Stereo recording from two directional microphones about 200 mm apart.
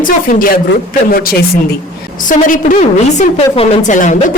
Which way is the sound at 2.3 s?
40° left (ahead or behind).